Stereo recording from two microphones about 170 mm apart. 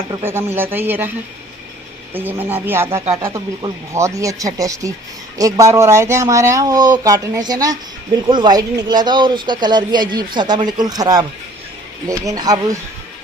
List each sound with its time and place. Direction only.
0.5 s speech: 10° right (ahead or behind)
2.1 s speech: 10° right (ahead or behind)